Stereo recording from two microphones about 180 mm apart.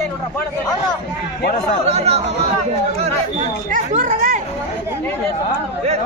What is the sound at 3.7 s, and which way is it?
Speech, 45° right (ahead or behind).